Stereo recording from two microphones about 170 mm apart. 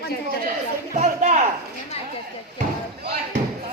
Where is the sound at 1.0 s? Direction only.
45° right (ahead or behind).